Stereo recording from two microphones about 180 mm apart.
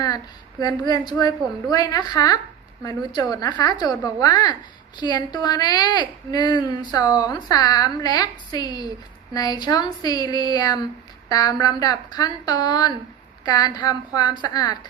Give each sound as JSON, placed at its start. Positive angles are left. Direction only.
{"t": 0.6, "sound": "speech", "side_deg": 20}